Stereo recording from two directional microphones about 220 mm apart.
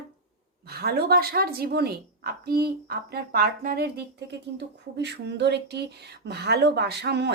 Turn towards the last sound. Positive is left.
turn(degrees=-50)  # may be behind; listen again after turning